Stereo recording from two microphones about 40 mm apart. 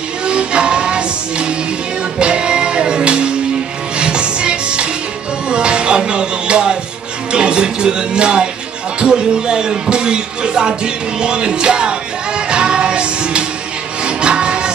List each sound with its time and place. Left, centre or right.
0.3 s music: right
7.3 s speech: right
12.4 s music: right